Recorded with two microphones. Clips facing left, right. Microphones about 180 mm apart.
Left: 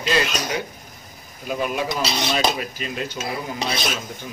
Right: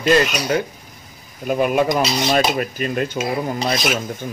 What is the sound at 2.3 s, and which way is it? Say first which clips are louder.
Stir: right 4 dB; 55° right (ahead or behind).